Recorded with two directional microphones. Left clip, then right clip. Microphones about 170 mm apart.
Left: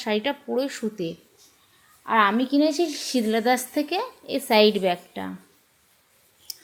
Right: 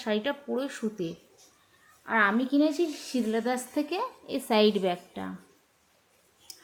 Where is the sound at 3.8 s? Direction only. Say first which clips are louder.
Left 4 dB; 15° left (ahead or behind).